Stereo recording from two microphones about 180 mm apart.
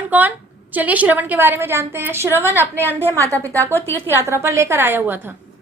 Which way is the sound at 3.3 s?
10° left (ahead or behind).